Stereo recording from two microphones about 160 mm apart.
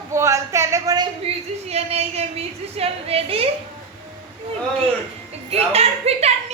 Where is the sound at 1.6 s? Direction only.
40° right (ahead or behind).